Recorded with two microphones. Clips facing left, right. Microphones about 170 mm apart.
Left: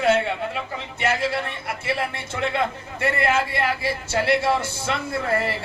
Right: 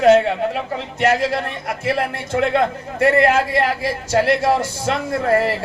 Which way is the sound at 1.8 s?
45° right (ahead or behind).